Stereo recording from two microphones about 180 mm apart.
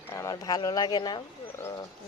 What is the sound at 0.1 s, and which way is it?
Speech, 20° left (ahead or behind).